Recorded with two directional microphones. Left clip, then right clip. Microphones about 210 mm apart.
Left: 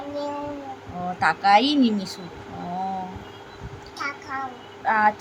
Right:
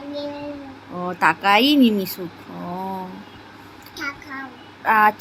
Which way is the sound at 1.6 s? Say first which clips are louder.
Right 5 dB; 15° left (ahead or behind).